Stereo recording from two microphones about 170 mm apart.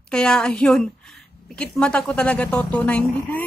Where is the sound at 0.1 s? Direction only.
5° left (ahead or behind).